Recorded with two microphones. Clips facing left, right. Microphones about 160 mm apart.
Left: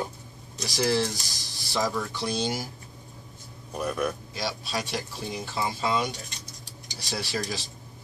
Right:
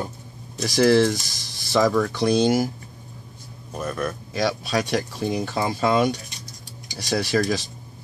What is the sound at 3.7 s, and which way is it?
Speech, 5° left (ahead or behind).